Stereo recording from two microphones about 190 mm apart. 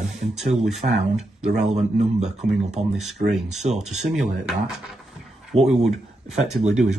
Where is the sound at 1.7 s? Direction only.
35° right (ahead or behind).